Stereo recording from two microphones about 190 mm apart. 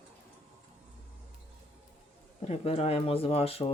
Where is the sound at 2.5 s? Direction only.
35° left (ahead or behind).